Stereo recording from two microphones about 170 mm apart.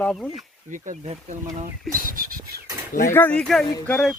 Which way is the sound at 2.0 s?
55° right (ahead or behind).